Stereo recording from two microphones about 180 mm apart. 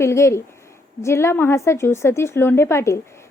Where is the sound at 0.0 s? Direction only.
15° left (ahead or behind).